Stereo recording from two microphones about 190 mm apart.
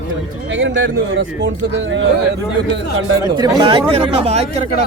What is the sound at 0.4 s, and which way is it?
A man's voice, 75° right (ahead or behind).